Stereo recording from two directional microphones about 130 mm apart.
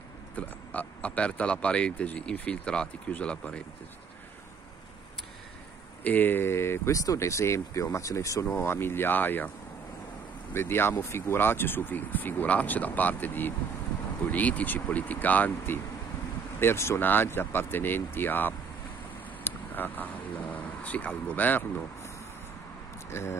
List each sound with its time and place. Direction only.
0.4 s speech: 10° left (ahead or behind)
6.0 s speech: 15° left (ahead or behind)
10.5 s speech: 20° left (ahead or behind)